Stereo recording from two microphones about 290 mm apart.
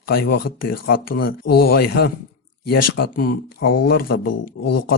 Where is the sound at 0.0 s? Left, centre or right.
Left.